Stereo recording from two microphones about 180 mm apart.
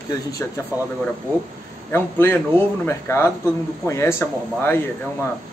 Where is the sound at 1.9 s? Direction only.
10° left (ahead or behind).